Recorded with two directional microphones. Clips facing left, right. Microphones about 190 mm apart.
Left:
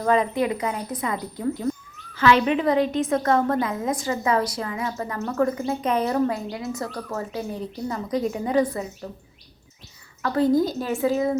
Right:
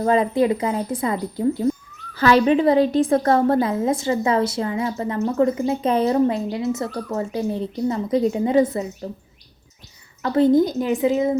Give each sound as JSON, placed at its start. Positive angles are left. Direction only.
{"t": 0.0, "sound": "a woman's voice", "side_deg": -30}
{"t": 10.2, "sound": "a woman's voice", "side_deg": -25}